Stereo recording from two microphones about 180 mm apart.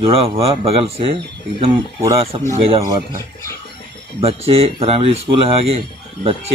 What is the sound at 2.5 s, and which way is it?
Speech, 35° right (ahead or behind).